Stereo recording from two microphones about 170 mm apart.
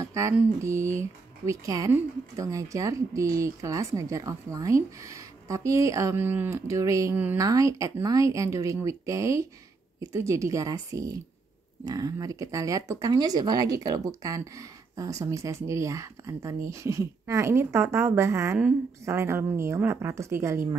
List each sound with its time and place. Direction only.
0.0 s speech: 20° right (ahead or behind)